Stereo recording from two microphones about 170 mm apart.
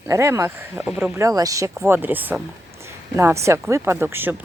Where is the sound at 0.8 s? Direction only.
5° right (ahead or behind).